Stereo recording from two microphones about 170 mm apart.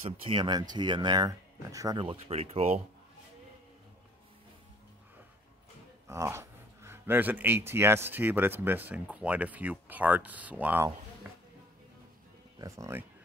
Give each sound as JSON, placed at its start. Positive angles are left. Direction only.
{"t": 0.3, "sound": "speech", "side_deg": -25}
{"t": 6.0, "sound": "speech", "side_deg": -15}
{"t": 11.3, "sound": "a sound", "side_deg": -10}
{"t": 12.5, "sound": "speech", "side_deg": -20}